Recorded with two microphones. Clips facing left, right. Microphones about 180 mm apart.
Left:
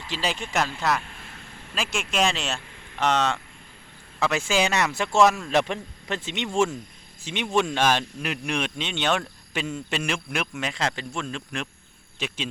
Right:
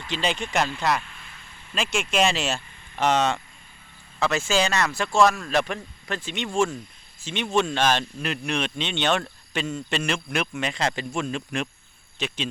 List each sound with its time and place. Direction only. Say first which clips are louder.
0.1 s speech: right 2 dB; centre (ahead or behind)
1.0 s vehicle: left 3 dB; 45° left (ahead or behind)
1.7 s speech: right 3 dB; centre (ahead or behind)
4.2 s speech: even; 10° left (ahead or behind); by 11.7 s 5° right (ahead or behind)